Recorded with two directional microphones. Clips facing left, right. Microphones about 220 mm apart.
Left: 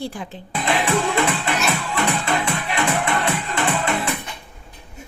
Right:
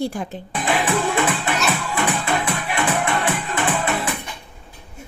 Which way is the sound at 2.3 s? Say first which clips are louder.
Even; 5° right (ahead or behind).